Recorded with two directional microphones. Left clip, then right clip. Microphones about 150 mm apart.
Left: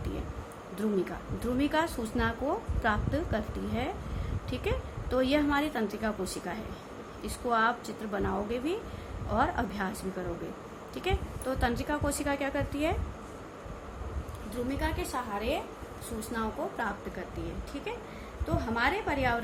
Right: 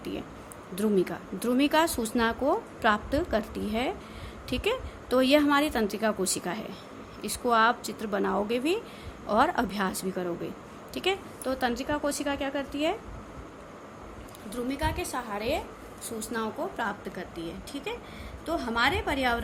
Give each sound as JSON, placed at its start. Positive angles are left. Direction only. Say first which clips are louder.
{"t": 0.8, "sound": "a woman's voice", "louder": "right 5 dB", "side_deg": -40}
{"t": 14.7, "sound": "a woman's voice", "louder": "right 3 dB", "side_deg": -50}
{"t": 18.4, "sound": "a woman's voice", "louder": "right 3 dB", "side_deg": -50}